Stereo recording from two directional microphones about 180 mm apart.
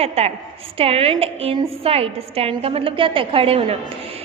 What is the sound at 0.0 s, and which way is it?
A woman's voice, 35° right (ahead or behind).